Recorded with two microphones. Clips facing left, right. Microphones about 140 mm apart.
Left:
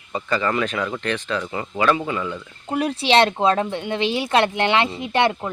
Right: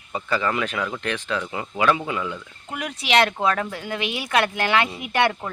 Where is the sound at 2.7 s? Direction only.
30° left (ahead or behind).